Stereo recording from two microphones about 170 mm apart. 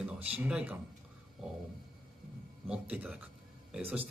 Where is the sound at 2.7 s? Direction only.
5° right (ahead or behind).